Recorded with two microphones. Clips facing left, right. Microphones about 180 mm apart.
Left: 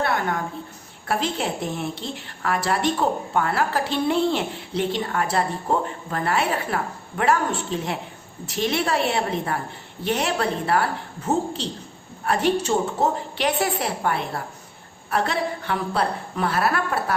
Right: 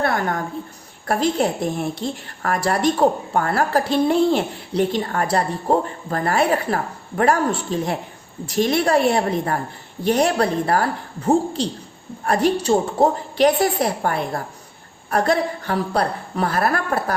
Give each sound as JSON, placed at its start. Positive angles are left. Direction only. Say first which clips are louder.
{"t": 0.0, "sound": "a sound", "louder": "right 2 dB", "side_deg": -45}
{"t": 1.0, "sound": "a woman's voice", "louder": "right 5 dB", "side_deg": -40}
{"t": 12.2, "sound": "a woman's voice", "louder": "right 3 dB", "side_deg": -40}